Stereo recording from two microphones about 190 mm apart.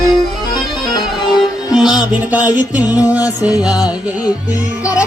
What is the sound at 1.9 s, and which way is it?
Music, 5° right (ahead or behind).